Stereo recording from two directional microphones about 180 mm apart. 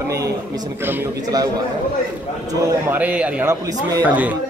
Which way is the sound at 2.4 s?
10° right (ahead or behind).